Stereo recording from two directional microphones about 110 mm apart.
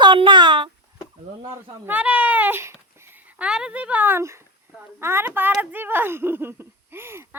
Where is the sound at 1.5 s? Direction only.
20° right (ahead or behind).